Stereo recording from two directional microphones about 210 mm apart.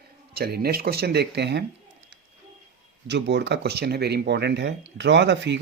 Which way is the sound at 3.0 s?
55° right (ahead or behind).